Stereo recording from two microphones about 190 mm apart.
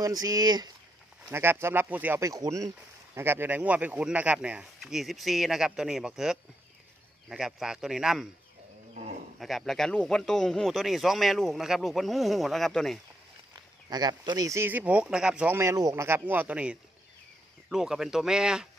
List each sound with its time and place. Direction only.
0.0 s speech: 20° right (ahead or behind); by 8.3 s 5° right (ahead or behind)
9.4 s speech: centre (ahead or behind)
13.8 s speech: 20° right (ahead or behind); by 18.7 s 5° right (ahead or behind)